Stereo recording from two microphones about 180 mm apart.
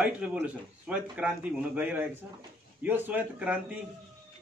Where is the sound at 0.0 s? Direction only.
5° right (ahead or behind).